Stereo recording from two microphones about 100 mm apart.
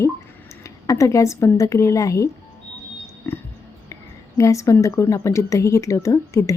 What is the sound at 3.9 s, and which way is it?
A woman's voice, 30° left (ahead or behind).